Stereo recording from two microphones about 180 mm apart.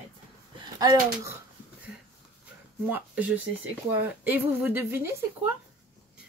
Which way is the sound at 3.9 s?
10° right (ahead or behind).